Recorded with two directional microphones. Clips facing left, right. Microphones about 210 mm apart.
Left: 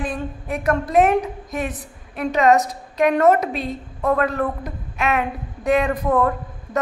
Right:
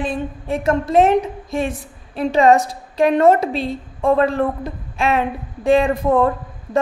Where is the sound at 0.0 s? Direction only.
25° right (ahead or behind).